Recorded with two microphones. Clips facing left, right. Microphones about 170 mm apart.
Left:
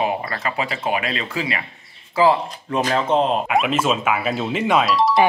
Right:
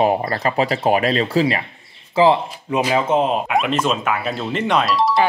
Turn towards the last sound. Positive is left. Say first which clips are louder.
# even
turn(degrees=0)  # may be behind; listen again after turning